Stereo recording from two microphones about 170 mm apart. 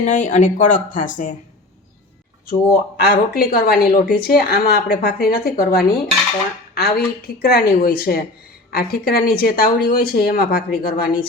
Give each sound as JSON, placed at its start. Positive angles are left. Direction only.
{"t": 0.0, "sound": "speech", "side_deg": 50}
{"t": 2.5, "sound": "speech", "side_deg": 60}